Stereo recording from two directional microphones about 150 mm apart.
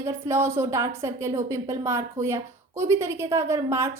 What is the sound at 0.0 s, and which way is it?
A woman's voice, 20° right (ahead or behind).